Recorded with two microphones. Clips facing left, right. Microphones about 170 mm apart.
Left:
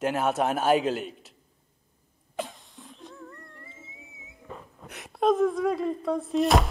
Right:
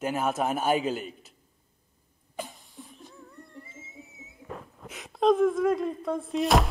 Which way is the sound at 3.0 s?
90° left.